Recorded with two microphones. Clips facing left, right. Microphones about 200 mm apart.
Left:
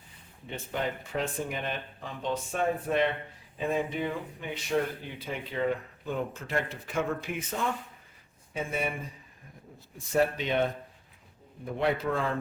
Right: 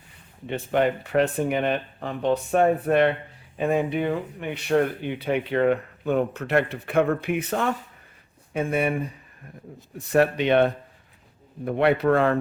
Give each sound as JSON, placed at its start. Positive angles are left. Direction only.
{"t": 0.4, "sound": "speech", "side_deg": -70}